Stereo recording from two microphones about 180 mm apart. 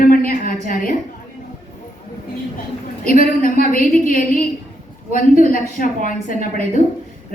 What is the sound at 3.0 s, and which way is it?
A woman's voice, 50° left (ahead or behind).